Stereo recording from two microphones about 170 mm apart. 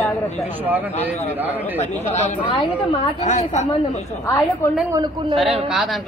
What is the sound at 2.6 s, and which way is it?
Speech, 30° left (ahead or behind).